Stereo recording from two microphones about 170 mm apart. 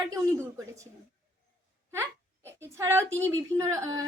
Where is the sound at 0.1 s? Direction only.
20° right (ahead or behind).